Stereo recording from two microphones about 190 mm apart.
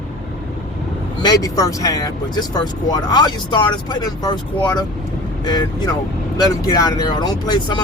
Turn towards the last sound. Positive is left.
turn(degrees=20)  # may be behind; listen again after turning